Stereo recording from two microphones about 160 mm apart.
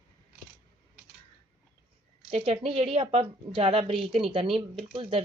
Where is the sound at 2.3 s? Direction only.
40° right (ahead or behind).